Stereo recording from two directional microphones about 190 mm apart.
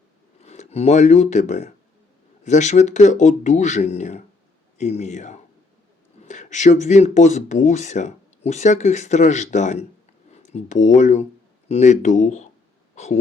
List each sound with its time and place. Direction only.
0.4 s speech: 35° left (ahead or behind)